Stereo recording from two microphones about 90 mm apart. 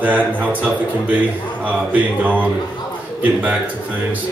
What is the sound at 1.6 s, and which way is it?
Speech, 15° right (ahead or behind).